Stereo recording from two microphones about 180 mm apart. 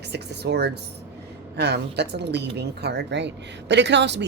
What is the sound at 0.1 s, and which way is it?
Speech, 70° right (ahead or behind).